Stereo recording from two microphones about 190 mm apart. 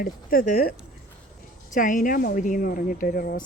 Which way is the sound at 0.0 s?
50° left (ahead or behind).